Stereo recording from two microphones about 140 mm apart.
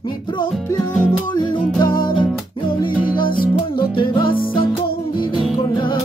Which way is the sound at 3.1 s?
90° left.